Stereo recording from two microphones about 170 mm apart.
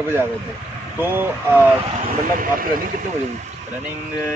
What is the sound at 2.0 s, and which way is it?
Speech, 55° right (ahead or behind).